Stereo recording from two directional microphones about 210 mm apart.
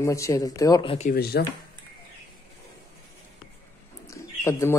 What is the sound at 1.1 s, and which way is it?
Speech, 50° left (ahead or behind).